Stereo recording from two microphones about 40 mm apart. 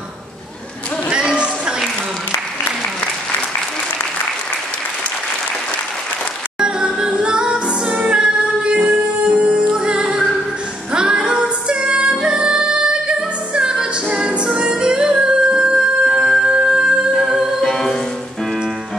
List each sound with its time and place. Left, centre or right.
1.1 s a sound: right
6.6 s music: centre
16.1 s music: centre
16.3 s music: centre
17.1 s music: centre
17.6 s music: centre